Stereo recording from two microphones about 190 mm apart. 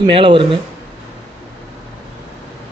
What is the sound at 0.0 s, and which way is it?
Speech, 25° right (ahead or behind).